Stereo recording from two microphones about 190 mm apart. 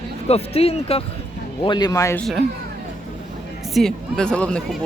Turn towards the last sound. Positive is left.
turn(degrees=5)  # may be behind; listen again after turning